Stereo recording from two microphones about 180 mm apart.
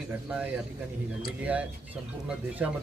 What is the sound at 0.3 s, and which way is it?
A man's voice, 10° right (ahead or behind).